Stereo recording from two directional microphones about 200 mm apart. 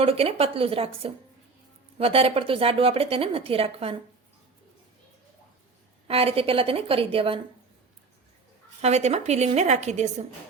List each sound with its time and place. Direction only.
0.0 s a woman's voice: 30° right (ahead or behind)
6.1 s a woman's voice: 30° right (ahead or behind)
8.8 s a woman's voice: 35° right (ahead or behind)